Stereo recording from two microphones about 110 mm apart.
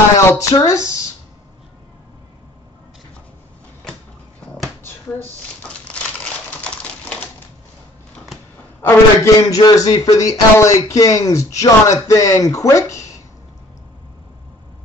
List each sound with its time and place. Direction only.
0.2 s speech: 25° left (ahead or behind)
4.8 s crumpling: 15° left (ahead or behind)
8.8 s a man's voice: 30° left (ahead or behind)